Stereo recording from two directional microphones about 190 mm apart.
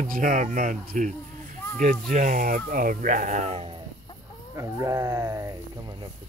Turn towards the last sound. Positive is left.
turn(degrees=-15)  # may be behind; listen again after turning